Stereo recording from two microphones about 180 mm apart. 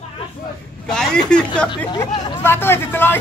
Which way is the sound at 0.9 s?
5° left (ahead or behind).